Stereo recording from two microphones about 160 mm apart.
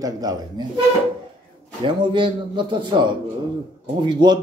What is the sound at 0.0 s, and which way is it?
Speech, 25° right (ahead or behind).